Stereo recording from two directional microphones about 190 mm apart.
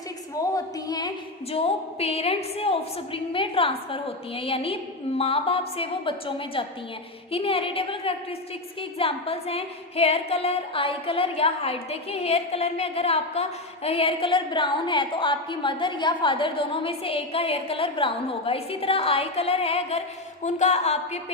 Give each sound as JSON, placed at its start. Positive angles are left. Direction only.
{"t": 0.5, "sound": "a woman's voice", "side_deg": 20}
{"t": 1.5, "sound": "a sound", "side_deg": 30}
{"t": 20.4, "sound": "speech", "side_deg": 35}